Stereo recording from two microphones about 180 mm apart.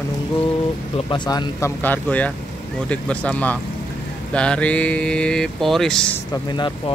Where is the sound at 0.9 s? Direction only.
25° left (ahead or behind).